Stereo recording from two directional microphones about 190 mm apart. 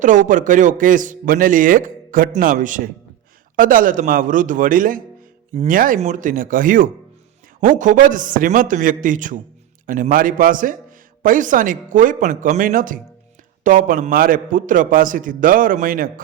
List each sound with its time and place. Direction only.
0.0 s a man's voice: 40° right (ahead or behind)